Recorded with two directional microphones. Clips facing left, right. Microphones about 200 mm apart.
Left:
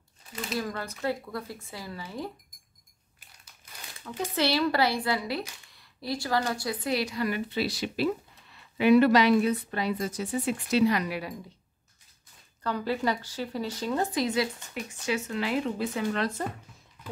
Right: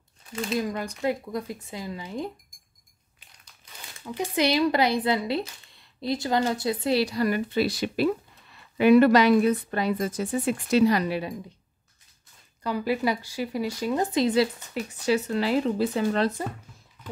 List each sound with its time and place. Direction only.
0.6 s speech: 15° right (ahead or behind)
4.0 s speech: 15° right (ahead or behind)
12.6 s speech: 10° right (ahead or behind)
14.2 s speech: 30° right (ahead or behind)